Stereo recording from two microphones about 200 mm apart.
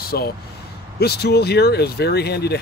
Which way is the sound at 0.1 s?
55° left (ahead or behind).